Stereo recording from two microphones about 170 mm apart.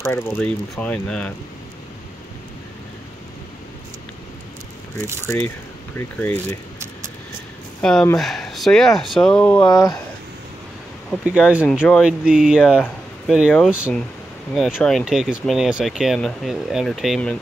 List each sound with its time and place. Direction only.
0.0 s speech: 10° left (ahead or behind)
5.9 s speech: 10° left (ahead or behind)
7.8 s speech: 5° left (ahead or behind)
9.6 s speech: 25° left (ahead or behind)
11.1 s speech: 5° right (ahead or behind)